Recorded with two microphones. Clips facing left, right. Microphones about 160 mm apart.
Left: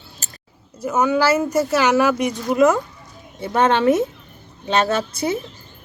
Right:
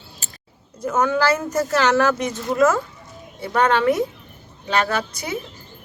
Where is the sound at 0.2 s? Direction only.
40° left (ahead or behind).